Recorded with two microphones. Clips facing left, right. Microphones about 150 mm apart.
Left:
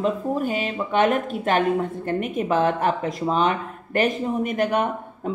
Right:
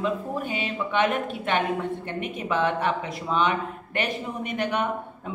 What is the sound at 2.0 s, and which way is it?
A woman's voice, 45° left (ahead or behind).